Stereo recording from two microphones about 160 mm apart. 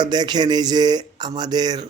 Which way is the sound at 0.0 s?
25° right (ahead or behind).